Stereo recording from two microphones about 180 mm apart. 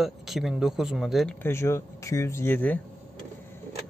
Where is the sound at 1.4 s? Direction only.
15° left (ahead or behind).